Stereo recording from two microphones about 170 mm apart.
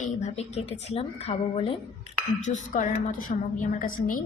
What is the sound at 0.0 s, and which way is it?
A woman's voice, 40° left (ahead or behind).